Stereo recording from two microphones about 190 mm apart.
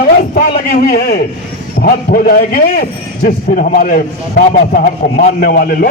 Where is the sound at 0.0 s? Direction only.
45° left (ahead or behind).